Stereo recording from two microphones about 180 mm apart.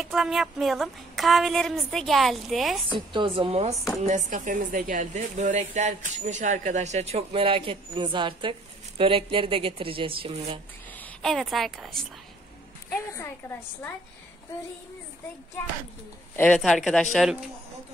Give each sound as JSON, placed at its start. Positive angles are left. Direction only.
{"t": 0.0, "sound": "a woman's voice", "side_deg": 0}
{"t": 2.9, "sound": "a woman's voice", "side_deg": -25}
{"t": 4.0, "sound": "speech", "side_deg": -45}
{"t": 10.9, "sound": "a woman's voice", "side_deg": 10}
{"t": 12.9, "sound": "a woman's voice", "side_deg": 15}
{"t": 16.3, "sound": "a woman's voice", "side_deg": 5}